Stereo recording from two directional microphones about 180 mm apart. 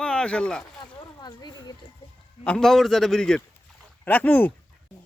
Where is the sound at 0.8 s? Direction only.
25° left (ahead or behind).